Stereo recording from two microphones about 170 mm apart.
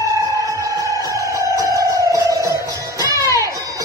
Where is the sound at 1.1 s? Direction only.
20° right (ahead or behind).